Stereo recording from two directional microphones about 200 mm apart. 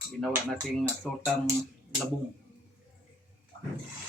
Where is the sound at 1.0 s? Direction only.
Centre (ahead or behind).